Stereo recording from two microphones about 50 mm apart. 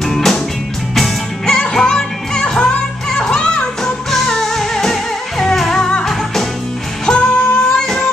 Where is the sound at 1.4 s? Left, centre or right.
Centre.